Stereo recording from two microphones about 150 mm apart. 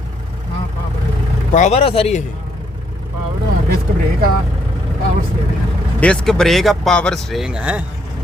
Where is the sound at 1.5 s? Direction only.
50° left (ahead or behind).